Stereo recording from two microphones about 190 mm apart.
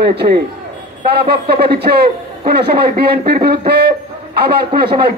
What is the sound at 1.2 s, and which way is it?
Speech, 55° right (ahead or behind).